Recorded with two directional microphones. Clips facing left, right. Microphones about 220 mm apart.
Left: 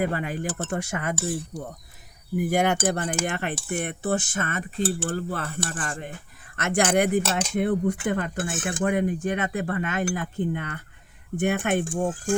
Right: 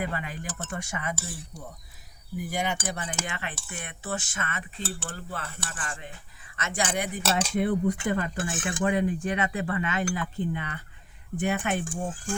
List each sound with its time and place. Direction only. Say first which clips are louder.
0.0 s speech: left 7 dB; 45° left (ahead or behind)
2.4 s speech: left 8 dB; 50° left (ahead or behind)
5.0 s speech: left 9 dB; 40° left (ahead or behind)
6.6 s speech: left 8 dB; 60° left (ahead or behind)